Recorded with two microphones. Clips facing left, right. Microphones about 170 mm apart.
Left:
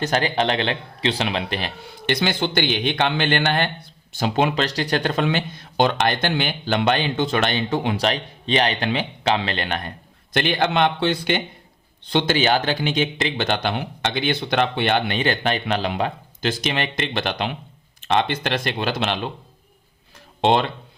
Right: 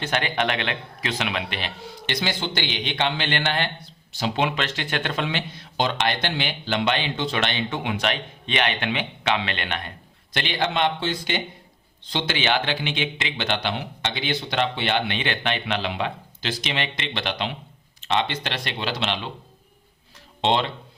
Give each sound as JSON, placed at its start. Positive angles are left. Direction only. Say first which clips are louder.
{"t": 0.0, "sound": "a man's voice", "louder": "left 4 dB", "side_deg": 35}
{"t": 1.9, "sound": "a man's voice", "louder": "left 6 dB", "side_deg": 55}
{"t": 20.4, "sound": "a man's voice", "louder": "left 4 dB", "side_deg": 50}